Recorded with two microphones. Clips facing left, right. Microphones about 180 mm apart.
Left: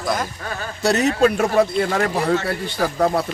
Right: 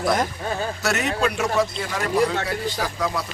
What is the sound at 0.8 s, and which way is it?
Speech, 35° left (ahead or behind).